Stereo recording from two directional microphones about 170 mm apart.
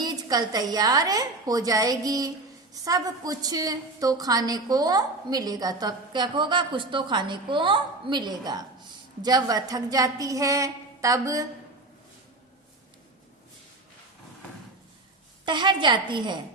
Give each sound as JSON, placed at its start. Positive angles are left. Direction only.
{"t": 0.0, "sound": "a woman's voice", "side_deg": -25}
{"t": 15.4, "sound": "a woman's voice", "side_deg": -25}